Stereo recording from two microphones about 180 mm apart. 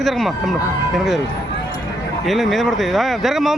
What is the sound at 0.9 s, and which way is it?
Speech, centre (ahead or behind).